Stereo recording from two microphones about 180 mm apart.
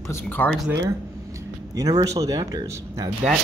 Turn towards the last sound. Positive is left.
turn(degrees=-20)  # may be behind; listen again after turning